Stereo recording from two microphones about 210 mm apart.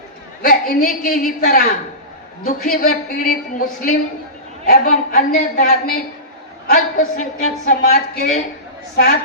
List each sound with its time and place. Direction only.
0.4 s a man's voice: 45° left (ahead or behind)